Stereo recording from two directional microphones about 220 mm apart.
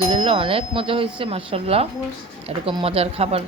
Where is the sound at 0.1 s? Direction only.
25° right (ahead or behind).